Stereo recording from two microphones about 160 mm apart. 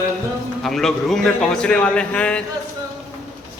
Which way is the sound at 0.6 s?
Centre (ahead or behind).